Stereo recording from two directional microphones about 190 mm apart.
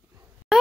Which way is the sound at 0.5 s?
5° right (ahead or behind).